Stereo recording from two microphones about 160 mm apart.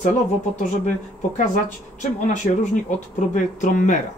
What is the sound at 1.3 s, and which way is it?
Speech, 55° left (ahead or behind).